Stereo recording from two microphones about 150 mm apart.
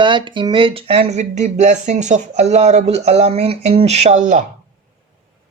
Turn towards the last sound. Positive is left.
turn(degrees=-55)  # may be behind; listen again after turning